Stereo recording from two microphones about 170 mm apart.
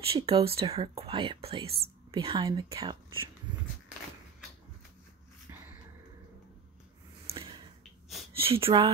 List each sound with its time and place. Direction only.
0.1 s speech: 35° right (ahead or behind)
7.2 s a sound: 30° right (ahead or behind)
8.4 s speech: 30° right (ahead or behind)